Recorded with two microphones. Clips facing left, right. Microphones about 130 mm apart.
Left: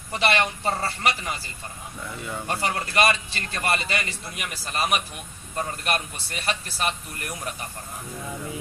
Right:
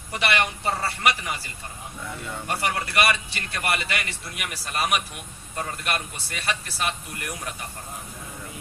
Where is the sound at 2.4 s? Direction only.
30° left (ahead or behind).